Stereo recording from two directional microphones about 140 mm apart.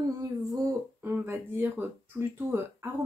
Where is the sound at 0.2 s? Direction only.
25° right (ahead or behind).